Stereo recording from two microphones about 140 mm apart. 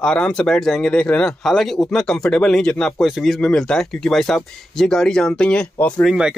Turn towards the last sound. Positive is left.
turn(degrees=10)  # may be behind; listen again after turning